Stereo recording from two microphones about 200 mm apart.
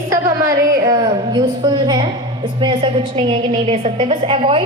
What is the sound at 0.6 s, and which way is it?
A woman's voice, 20° right (ahead or behind).